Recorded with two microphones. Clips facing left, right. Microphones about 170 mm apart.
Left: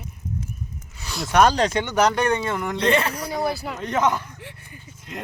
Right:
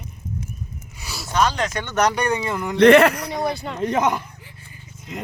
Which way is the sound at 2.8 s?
90° right.